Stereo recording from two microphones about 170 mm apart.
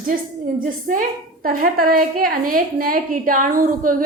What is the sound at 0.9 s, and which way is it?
A woman's voice, 50° right (ahead or behind).